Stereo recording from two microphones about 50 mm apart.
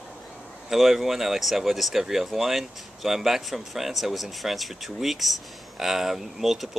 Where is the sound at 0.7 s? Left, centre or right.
Centre.